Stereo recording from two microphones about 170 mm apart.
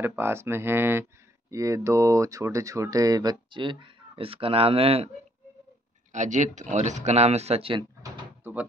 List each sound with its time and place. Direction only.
0.0 s speech: 15° right (ahead or behind); by 5.1 s 35° right (ahead or behind)
6.1 s speech: 45° right (ahead or behind)
8.0 s bird: 15° right (ahead or behind)